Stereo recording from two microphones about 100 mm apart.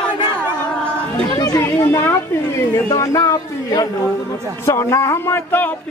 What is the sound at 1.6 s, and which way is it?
A man's voice, 25° left (ahead or behind).